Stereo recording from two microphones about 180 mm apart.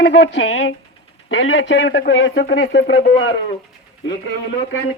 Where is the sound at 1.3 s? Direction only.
90° left.